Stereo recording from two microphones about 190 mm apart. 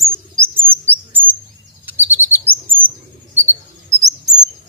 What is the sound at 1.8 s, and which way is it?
Bird, 10° right (ahead or behind).